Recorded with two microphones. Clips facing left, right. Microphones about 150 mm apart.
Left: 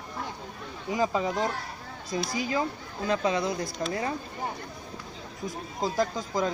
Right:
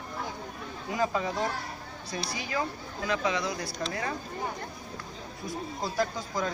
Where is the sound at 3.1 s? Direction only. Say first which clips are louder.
Left 3 dB; 30° left (ahead or behind).